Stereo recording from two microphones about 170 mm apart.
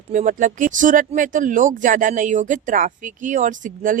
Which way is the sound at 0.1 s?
50° right (ahead or behind).